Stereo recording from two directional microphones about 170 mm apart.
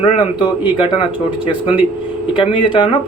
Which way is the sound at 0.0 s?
25° left (ahead or behind).